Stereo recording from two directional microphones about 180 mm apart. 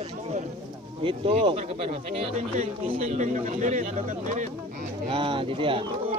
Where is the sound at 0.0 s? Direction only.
40° right (ahead or behind).